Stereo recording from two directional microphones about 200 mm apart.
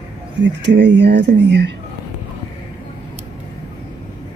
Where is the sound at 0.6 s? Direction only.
60° right (ahead or behind).